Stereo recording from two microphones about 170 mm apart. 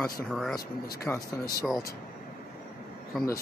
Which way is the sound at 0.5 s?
20° left (ahead or behind).